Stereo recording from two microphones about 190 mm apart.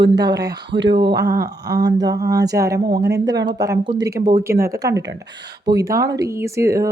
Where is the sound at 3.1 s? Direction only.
20° right (ahead or behind).